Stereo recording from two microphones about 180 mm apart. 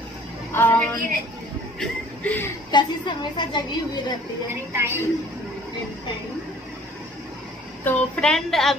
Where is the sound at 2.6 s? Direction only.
25° left (ahead or behind).